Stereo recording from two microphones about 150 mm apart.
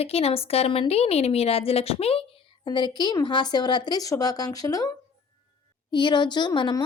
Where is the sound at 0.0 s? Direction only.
40° left (ahead or behind).